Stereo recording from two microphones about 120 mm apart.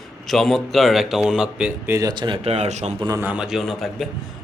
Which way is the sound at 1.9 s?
25° right (ahead or behind).